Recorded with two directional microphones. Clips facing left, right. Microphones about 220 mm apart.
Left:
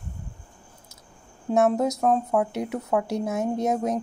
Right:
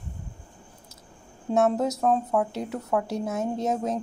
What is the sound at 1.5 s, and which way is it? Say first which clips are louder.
Speech: left 2 dB; 10° left (ahead or behind).